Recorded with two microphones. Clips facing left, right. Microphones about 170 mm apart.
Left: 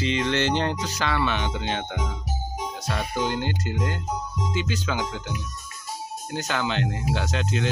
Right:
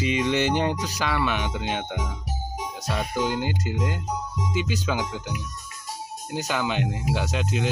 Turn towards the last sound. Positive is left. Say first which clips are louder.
# even
turn(degrees=-10)  # may be behind; listen again after turning